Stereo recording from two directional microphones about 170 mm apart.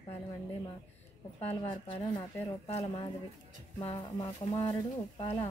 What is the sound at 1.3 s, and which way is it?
Speech, 35° left (ahead or behind).